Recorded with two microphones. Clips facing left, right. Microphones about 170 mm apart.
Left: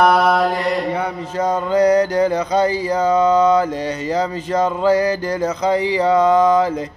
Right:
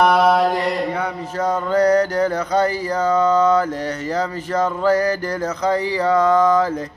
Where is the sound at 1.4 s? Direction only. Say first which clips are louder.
Left 2 dB; 15° left (ahead or behind).